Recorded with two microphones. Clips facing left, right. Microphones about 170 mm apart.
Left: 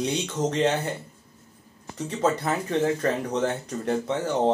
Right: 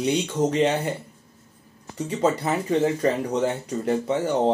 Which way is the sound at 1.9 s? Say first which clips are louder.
Right 2 dB; 10° right (ahead or behind).